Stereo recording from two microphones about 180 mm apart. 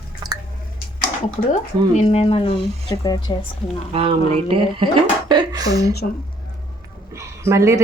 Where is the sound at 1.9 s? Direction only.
40° left (ahead or behind); by 3.2 s 20° left (ahead or behind).